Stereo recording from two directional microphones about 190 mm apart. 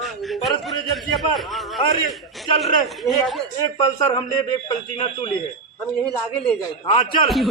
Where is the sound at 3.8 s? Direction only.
20° left (ahead or behind).